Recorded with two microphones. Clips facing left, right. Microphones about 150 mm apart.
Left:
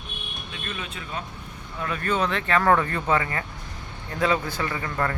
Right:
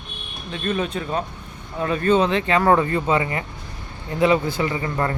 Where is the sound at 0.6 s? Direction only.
40° right (ahead or behind).